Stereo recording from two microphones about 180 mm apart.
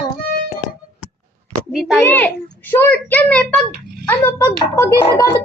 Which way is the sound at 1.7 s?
Centre (ahead or behind).